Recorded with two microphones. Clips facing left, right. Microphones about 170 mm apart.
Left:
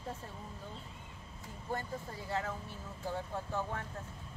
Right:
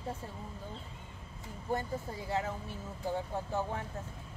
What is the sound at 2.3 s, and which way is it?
Speech, 15° right (ahead or behind).